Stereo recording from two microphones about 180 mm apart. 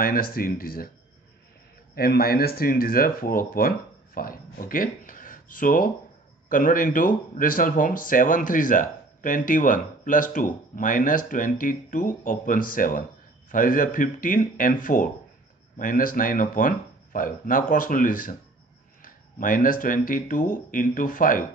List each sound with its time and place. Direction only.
0.0 s speech: 50° left (ahead or behind)
2.0 s speech: 55° left (ahead or behind)